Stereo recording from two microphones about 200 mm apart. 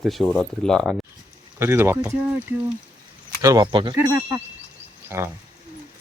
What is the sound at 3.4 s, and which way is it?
Speech, 15° right (ahead or behind).